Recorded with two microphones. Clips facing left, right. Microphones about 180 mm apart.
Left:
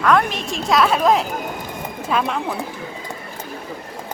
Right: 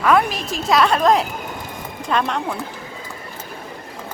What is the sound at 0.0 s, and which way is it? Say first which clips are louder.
A woman's voice: right 1 dB; 5° right (ahead or behind).